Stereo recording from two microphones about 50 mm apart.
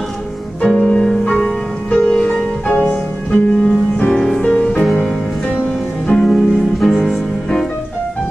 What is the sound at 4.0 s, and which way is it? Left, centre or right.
Music, centre.